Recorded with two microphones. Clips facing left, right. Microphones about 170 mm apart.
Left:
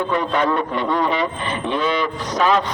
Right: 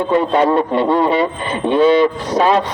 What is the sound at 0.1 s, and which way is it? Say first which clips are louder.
A man's voice: right 9 dB; 30° right (ahead or behind).